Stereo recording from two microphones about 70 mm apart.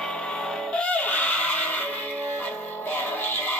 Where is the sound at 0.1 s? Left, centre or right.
Centre.